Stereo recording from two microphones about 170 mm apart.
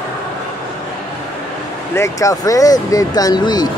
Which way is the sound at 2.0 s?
20° left (ahead or behind).